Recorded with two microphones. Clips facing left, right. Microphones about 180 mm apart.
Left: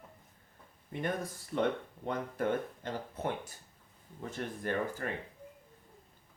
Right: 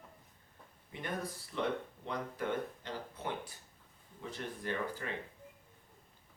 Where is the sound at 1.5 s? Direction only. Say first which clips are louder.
Left 5 dB; 50° left (ahead or behind).